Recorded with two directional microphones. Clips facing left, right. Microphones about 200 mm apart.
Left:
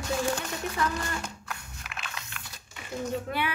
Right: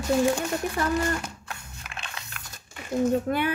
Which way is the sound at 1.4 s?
30° right (ahead or behind).